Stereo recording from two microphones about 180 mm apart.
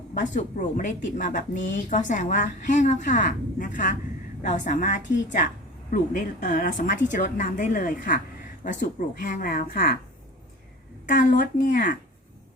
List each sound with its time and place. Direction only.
0.1 s a woman's voice: 45° left (ahead or behind)
11.1 s a woman's voice: 45° left (ahead or behind)